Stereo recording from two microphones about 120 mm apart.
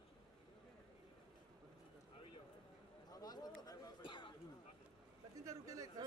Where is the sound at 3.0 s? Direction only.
35° left (ahead or behind).